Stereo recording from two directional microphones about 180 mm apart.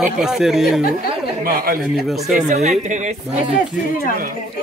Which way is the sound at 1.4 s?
55° right (ahead or behind).